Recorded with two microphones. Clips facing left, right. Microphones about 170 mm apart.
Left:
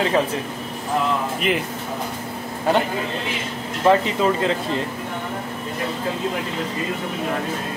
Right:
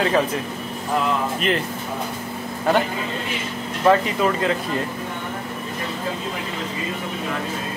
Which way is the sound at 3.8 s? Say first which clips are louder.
Even; 25° left (ahead or behind).